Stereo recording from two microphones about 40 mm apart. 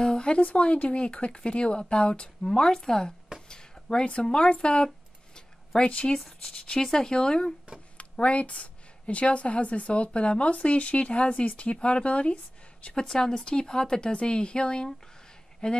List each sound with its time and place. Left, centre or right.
0.0 s a sound: left
0.4 s speech: left
2.4 s speech: centre
4.8 s a sound: centre
5.8 s speech: left
6.1 s speech: centre
8.0 s a woman's voice: left
13.1 s speech: centre